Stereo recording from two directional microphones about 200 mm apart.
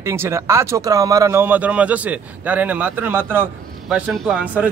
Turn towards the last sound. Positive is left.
turn(degrees=-5)  # may be behind; listen again after turning